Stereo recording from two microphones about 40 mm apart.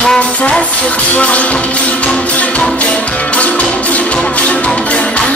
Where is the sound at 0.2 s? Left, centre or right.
Left.